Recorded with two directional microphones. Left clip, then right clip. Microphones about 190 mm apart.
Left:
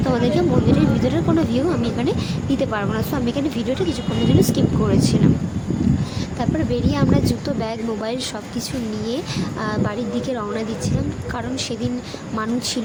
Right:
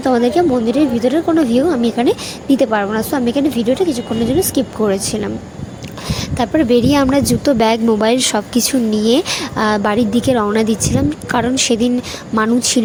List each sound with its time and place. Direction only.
0.0 s a woman's voice: 30° right (ahead or behind)
6.4 s a woman's voice: 45° right (ahead or behind)